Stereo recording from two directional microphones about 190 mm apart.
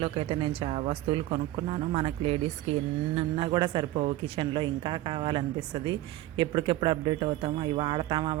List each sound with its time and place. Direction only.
0.0 s speech: 30° right (ahead or behind)